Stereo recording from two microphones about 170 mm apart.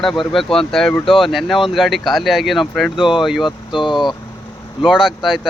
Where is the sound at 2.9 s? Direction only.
30° left (ahead or behind).